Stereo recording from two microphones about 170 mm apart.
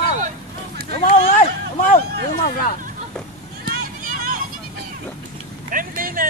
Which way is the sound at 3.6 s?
55° right (ahead or behind).